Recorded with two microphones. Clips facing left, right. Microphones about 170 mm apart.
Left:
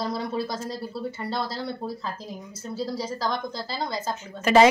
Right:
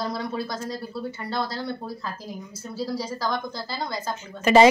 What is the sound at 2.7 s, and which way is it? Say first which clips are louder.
Speech: even; 20° left (ahead or behind).